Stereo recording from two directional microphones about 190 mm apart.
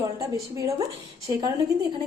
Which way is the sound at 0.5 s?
15° right (ahead or behind).